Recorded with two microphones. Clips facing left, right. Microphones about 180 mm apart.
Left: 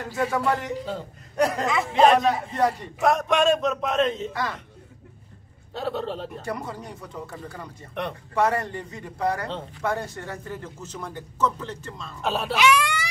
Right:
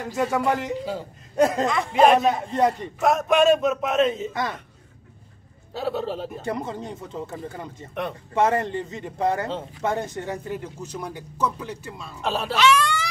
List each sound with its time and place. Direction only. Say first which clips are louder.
0.0 s speech: right 2 dB; 15° right (ahead or behind)
2.0 s speech: right 1 dB; 10° right (ahead or behind)
2.5 s speech: right 2 dB; 20° right (ahead or behind)
3.0 s a man's voice: right 2 dB; centre (ahead or behind)
4.3 s speech: right 2 dB; 20° right (ahead or behind)
5.7 s a man's voice: right 2 dB; 5° right (ahead or behind)
6.4 s speech: right 3 dB; 20° right (ahead or behind)
12.2 s a man's voice: even; centre (ahead or behind)
12.5 s speech: right 2 dB; 10° left (ahead or behind)